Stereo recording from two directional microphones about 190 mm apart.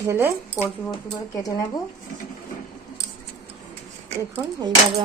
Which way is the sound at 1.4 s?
20° left (ahead or behind).